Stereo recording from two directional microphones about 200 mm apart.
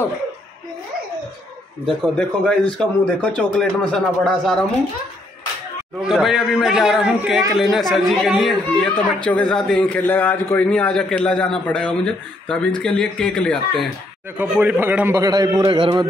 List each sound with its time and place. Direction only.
1.9 s speech: 5° left (ahead or behind)
5.9 s speech: centre (ahead or behind)
14.3 s a man's voice: 5° right (ahead or behind)